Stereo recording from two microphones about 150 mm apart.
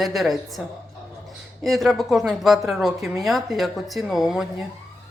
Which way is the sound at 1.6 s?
Centre (ahead or behind).